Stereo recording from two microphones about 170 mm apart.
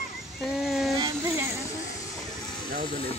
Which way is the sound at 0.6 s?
Centre (ahead or behind).